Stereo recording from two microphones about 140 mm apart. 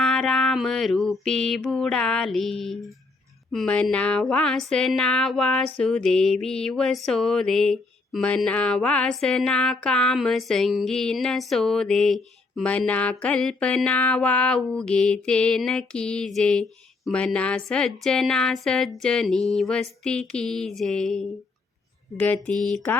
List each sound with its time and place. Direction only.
0.0 s mantra: 5° left (ahead or behind)
3.5 s a sound: 5° left (ahead or behind)
22.2 s mantra: 10° left (ahead or behind)